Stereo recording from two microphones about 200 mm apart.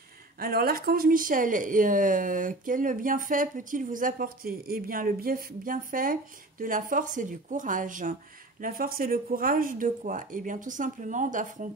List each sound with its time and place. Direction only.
0.4 s speech: 50° right (ahead or behind)